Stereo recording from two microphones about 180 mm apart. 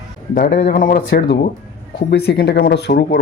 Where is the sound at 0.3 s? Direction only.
55° left (ahead or behind).